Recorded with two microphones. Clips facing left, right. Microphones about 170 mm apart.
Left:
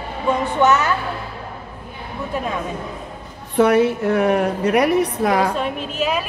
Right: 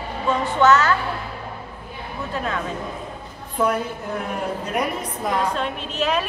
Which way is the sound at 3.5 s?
80° left.